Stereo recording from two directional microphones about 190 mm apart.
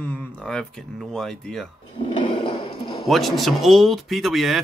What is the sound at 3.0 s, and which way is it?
Speech, centre (ahead or behind).